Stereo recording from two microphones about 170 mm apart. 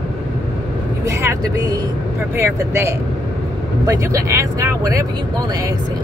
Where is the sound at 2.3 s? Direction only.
15° right (ahead or behind).